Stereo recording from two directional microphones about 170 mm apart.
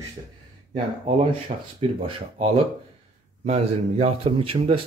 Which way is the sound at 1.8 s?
35° right (ahead or behind).